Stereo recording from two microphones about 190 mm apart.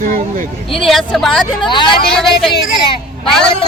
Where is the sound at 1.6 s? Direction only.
25° left (ahead or behind).